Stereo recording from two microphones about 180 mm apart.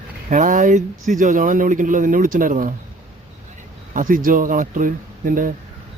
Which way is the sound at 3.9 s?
50° right (ahead or behind).